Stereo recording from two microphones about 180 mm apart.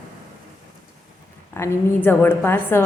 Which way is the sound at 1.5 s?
15° left (ahead or behind).